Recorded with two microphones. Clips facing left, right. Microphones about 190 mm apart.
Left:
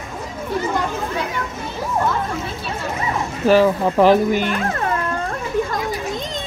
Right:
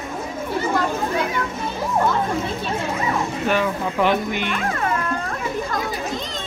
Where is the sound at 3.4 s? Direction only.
35° left (ahead or behind).